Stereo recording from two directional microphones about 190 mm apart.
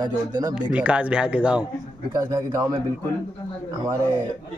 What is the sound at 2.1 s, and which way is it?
Speech, 15° right (ahead or behind).